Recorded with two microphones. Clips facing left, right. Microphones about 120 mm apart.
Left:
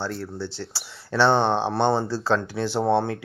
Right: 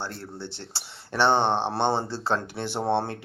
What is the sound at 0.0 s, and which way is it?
Speech, 20° right (ahead or behind).